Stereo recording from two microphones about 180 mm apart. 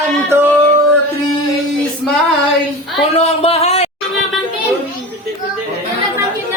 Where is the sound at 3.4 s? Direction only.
35° left (ahead or behind).